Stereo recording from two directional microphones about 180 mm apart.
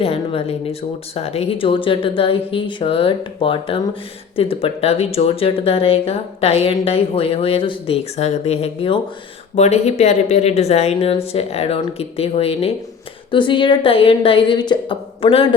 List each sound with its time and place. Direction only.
0.0 s speech: 35° left (ahead or behind)